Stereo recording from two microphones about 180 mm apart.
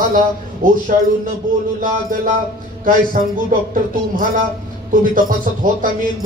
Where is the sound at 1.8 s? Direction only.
50° right (ahead or behind).